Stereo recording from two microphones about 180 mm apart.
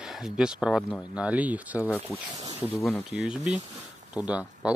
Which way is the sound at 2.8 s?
Centre (ahead or behind).